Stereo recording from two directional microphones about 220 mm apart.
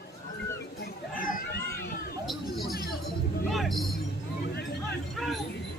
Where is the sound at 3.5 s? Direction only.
Centre (ahead or behind).